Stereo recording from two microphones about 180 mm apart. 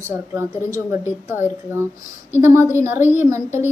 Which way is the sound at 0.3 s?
15° right (ahead or behind).